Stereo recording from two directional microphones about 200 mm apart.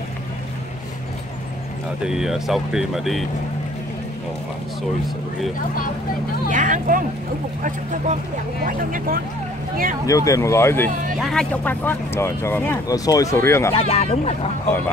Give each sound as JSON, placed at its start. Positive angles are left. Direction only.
{"t": 2.0, "sound": "speech", "side_deg": 0}
{"t": 6.5, "sound": "speech", "side_deg": -40}
{"t": 10.0, "sound": "speech", "side_deg": 15}
{"t": 11.1, "sound": "speech", "side_deg": 0}
{"t": 13.7, "sound": "speech", "side_deg": 30}